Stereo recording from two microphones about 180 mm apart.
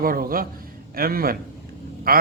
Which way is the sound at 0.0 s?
55° right (ahead or behind).